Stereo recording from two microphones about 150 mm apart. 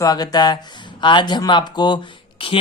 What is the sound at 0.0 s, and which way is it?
Speech, 25° left (ahead or behind).